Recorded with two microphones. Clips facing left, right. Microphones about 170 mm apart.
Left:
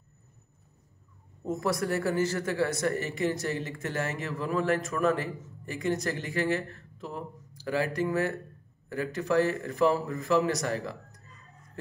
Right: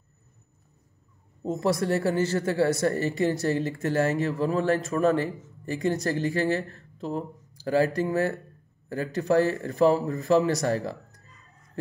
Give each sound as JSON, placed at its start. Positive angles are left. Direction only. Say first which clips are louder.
{"t": 1.4, "sound": "speech", "louder": "right 4 dB", "side_deg": -25}